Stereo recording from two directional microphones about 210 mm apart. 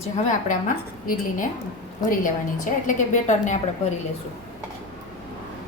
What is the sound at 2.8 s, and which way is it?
Speech, 35° left (ahead or behind).